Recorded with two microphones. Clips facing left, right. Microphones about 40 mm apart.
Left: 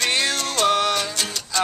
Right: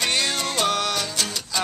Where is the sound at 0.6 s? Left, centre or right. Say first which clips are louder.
Left 6 dB; centre.